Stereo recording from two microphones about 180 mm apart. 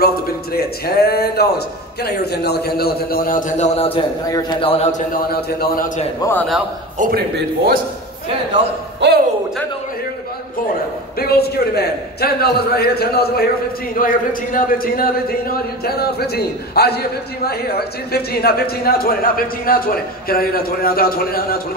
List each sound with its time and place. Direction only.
0.0 s a man's voice: 60° left (ahead or behind); by 5.0 s 35° left (ahead or behind)
5.1 s speech: 55° left (ahead or behind)
7.0 s speech: 55° right (ahead or behind)
9.0 s music: 70° right (ahead or behind)
11.1 s speech: 60° left (ahead or behind)